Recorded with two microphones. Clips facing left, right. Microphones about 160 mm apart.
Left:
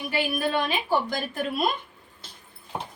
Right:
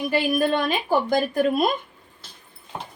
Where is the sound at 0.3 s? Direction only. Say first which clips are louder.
Right 4 dB; 45° right (ahead or behind).